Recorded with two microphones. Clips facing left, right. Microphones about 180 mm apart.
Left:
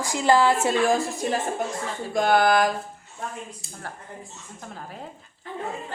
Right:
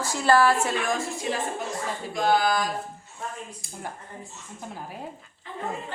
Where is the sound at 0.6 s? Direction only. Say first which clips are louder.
Left 6 dB; 35° left (ahead or behind).